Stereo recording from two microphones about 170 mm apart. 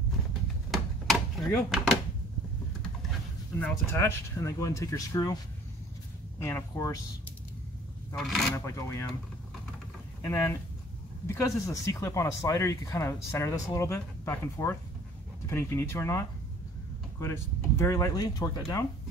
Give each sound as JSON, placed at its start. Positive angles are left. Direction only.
{"t": 0.7, "sound": "a sound", "side_deg": 0}
{"t": 3.5, "sound": "speech", "side_deg": 15}
{"t": 6.4, "sound": "speech", "side_deg": 20}
{"t": 8.6, "sound": "speech", "side_deg": 20}
{"t": 10.2, "sound": "speech", "side_deg": 15}